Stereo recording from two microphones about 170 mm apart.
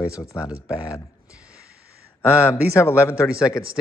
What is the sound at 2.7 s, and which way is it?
Speech, 15° left (ahead or behind).